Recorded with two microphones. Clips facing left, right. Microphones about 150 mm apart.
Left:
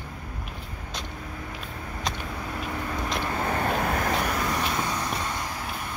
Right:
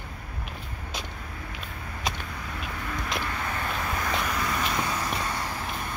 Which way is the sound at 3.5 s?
50° left (ahead or behind).